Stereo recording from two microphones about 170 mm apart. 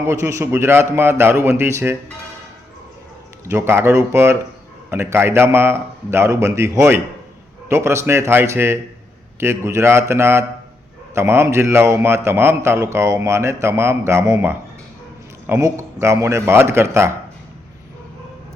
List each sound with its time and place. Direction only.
0.1 s a man's voice: 15° right (ahead or behind)
3.4 s a man's voice: 15° right (ahead or behind)